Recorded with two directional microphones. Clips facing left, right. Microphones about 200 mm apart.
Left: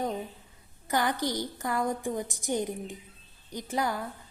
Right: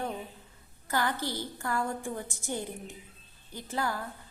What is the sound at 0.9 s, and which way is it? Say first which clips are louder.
A woman's voice: left 3 dB; 15° left (ahead or behind).